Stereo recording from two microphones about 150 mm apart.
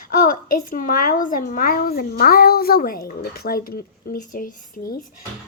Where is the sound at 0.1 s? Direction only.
65° left (ahead or behind).